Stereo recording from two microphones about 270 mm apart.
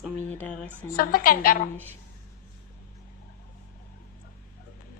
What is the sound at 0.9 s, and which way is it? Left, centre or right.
Speech, left.